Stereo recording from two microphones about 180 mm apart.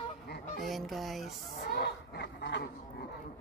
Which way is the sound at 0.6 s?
Centre (ahead or behind).